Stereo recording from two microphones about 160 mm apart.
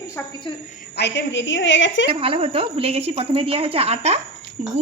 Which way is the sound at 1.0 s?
90° left.